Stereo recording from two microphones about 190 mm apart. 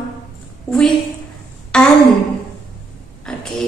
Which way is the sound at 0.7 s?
5° left (ahead or behind).